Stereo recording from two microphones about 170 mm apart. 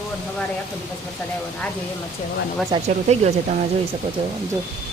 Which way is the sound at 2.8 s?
40° right (ahead or behind).